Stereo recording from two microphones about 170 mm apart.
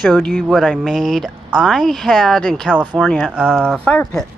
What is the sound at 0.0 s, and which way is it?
Speech, 5° left (ahead or behind).